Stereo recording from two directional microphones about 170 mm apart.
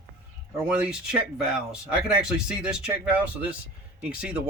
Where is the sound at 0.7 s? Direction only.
5° right (ahead or behind).